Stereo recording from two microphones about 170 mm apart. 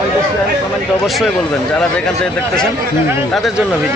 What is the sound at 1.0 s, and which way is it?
Speech, centre (ahead or behind).